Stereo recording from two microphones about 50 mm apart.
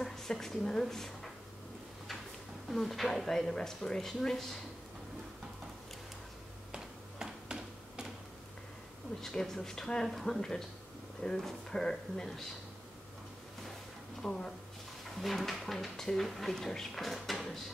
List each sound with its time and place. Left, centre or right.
0.0 s a woman's voice: centre
2.7 s speech: centre
7.2 s a sound: centre
9.2 s speech: centre
14.2 s speech: centre